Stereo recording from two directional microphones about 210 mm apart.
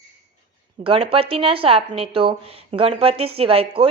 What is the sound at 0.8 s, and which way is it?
Speech, 25° right (ahead or behind).